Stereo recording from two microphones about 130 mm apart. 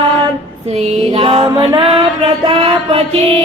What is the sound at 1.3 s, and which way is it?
Music, 35° right (ahead or behind).